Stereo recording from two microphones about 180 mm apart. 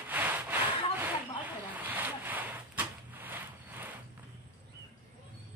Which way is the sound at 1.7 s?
10° right (ahead or behind).